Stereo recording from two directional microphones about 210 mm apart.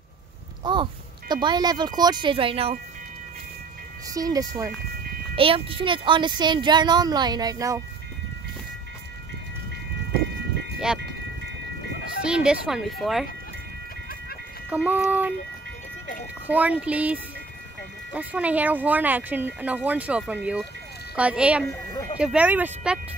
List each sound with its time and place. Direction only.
0.7 s a child's voice: 20° right (ahead or behind)
4.1 s a child's voice: 15° right (ahead or behind)
12.3 s speech: 5° right (ahead or behind)
14.7 s speech: 10° right (ahead or behind)
16.4 s speech: 5° right (ahead or behind)